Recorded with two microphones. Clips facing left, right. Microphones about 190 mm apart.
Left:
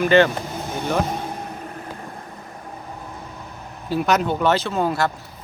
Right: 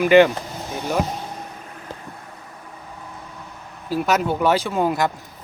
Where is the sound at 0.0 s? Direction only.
15° right (ahead or behind).